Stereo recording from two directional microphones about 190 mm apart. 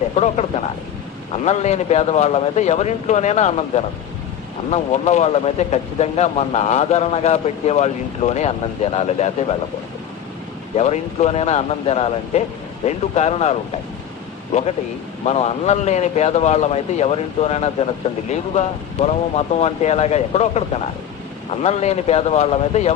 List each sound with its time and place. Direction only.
0.2 s speech: 35° left (ahead or behind)
10.8 s speech: 35° left (ahead or behind)
15.3 s speech: 35° left (ahead or behind)